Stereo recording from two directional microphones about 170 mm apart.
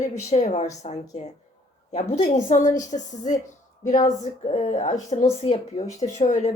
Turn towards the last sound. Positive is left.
turn(degrees=45)  # may be behind; listen again after turning